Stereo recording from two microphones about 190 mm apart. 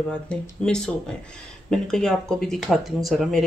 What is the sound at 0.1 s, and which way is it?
Speech, 5° left (ahead or behind).